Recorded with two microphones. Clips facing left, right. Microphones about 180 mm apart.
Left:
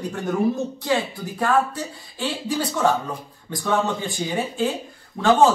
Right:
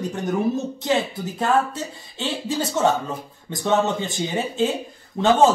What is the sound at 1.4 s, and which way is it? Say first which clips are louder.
Speech: even; 25° right (ahead or behind).